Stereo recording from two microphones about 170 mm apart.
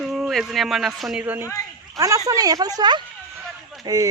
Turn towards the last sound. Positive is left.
turn(degrees=-20)  # may be behind; listen again after turning